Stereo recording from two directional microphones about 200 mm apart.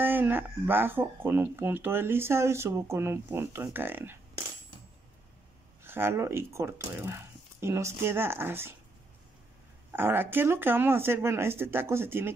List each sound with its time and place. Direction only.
0.0 s speech: 10° right (ahead or behind)
5.9 s speech: 10° right (ahead or behind)
9.8 s speech: 10° right (ahead or behind)